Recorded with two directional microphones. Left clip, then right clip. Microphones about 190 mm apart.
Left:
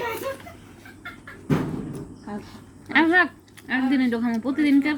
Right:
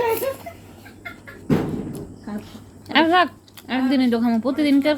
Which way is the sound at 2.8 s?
20° right (ahead or behind).